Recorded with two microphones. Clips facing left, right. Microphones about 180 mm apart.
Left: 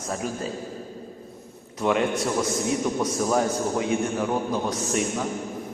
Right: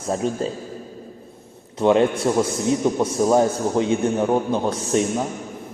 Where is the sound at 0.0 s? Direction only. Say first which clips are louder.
Right 6 dB; 25° right (ahead or behind).